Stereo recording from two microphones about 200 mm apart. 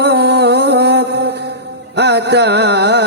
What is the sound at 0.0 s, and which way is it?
Music, 55° right (ahead or behind).